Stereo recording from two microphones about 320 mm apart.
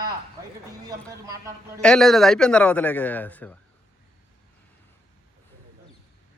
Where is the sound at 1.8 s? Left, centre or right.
Centre.